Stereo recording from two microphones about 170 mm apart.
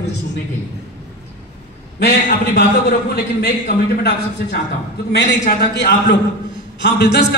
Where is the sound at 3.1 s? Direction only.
70° left (ahead or behind).